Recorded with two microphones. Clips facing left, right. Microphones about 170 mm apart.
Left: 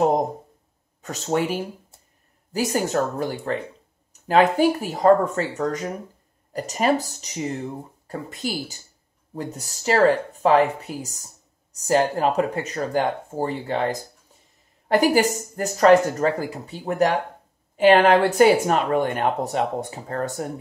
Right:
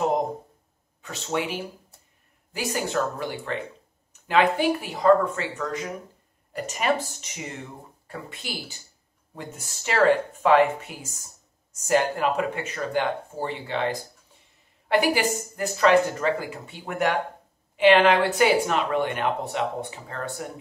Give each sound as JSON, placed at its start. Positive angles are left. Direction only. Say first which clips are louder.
{"t": 1.0, "sound": "speech", "louder": "left 5 dB", "side_deg": 40}